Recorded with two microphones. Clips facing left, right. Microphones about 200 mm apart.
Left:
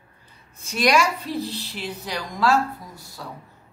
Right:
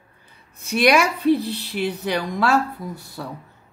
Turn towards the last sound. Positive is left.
turn(degrees=-60)  # may be behind; listen again after turning